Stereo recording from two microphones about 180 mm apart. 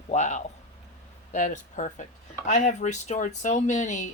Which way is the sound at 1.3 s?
45° left (ahead or behind).